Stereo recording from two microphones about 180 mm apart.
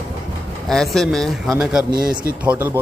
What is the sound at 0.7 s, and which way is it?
A man's voice, centre (ahead or behind).